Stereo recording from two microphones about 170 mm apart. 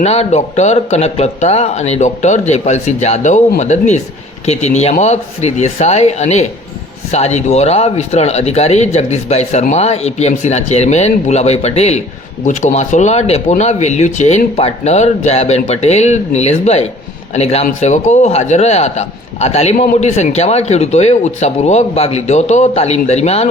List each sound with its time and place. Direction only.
0.0 s a man's voice: 40° left (ahead or behind)